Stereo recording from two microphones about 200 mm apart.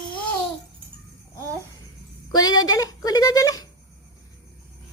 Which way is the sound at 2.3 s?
20° left (ahead or behind).